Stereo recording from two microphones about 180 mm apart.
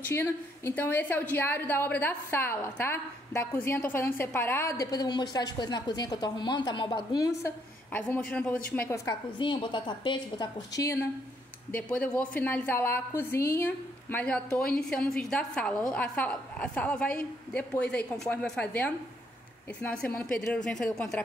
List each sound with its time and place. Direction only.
0.0 s a woman's voice: 15° left (ahead or behind)
8.7 s a woman's voice: 15° left (ahead or behind)
9.4 s a woman's voice: 25° left (ahead or behind); by 21.2 s 5° left (ahead or behind)